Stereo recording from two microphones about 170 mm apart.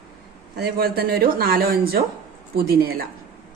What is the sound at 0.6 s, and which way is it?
A woman's voice, 65° right (ahead or behind).